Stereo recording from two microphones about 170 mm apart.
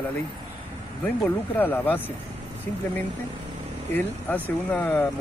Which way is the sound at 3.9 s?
10° left (ahead or behind).